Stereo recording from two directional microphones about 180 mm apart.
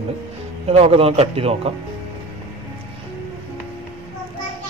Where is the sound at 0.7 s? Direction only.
35° right (ahead or behind).